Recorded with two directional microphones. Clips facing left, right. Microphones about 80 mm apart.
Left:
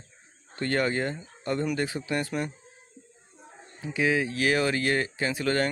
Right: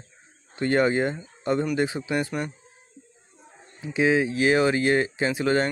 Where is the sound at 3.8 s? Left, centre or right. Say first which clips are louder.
Right 4 dB; right.